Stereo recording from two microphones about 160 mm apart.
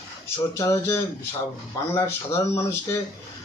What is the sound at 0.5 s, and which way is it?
A man's voice, 20° left (ahead or behind).